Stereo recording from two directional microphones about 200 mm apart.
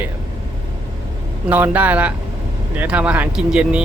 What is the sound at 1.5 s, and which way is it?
Speech, 10° right (ahead or behind).